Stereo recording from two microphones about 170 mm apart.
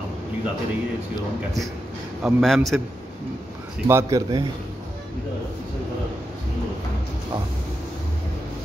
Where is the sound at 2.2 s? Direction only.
Centre (ahead or behind).